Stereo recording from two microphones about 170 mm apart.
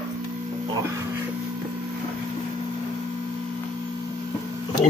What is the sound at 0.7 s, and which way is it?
Music, 20° right (ahead or behind).